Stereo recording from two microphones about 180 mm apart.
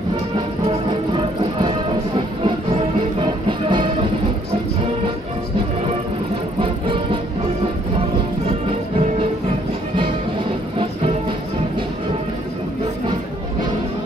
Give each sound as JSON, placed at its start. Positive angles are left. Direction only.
{"t": 2.4, "sound": "music", "side_deg": -30}